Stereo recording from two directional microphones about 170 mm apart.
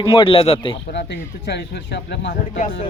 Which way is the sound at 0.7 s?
90° left.